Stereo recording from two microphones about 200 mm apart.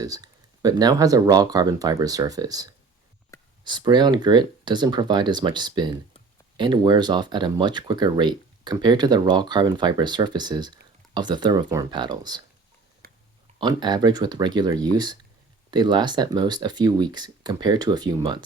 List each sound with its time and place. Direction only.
0.0 s speech: 20° right (ahead or behind)
13.0 s a sound: 45° right (ahead or behind)
13.6 s speech: 20° right (ahead or behind)